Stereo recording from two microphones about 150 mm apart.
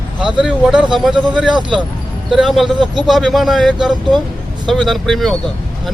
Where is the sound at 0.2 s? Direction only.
5° right (ahead or behind).